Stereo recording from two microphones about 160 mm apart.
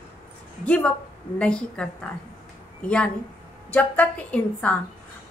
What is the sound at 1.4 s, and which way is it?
A woman's voice, 5° left (ahead or behind).